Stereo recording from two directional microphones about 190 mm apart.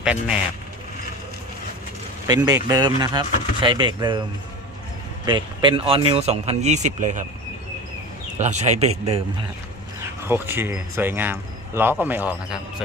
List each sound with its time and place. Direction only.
0.0 s speech: 5° right (ahead or behind)
2.6 s speech: 20° right (ahead or behind)
5.2 s speech: 25° right (ahead or behind)
8.4 s speech: 35° right (ahead or behind)
10.2 s speech: 10° right (ahead or behind)